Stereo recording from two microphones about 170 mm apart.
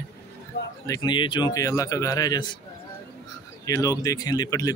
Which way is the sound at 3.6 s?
20° left (ahead or behind).